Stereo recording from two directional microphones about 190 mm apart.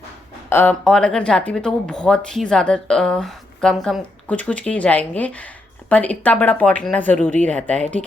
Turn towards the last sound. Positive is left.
turn(degrees=10)  # may be behind; listen again after turning